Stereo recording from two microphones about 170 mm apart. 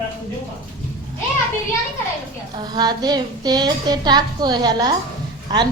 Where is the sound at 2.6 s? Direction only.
25° right (ahead or behind).